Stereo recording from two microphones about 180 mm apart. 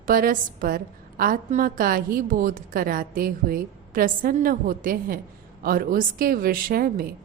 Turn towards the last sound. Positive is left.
turn(degrees=-55)  # may be behind; listen again after turning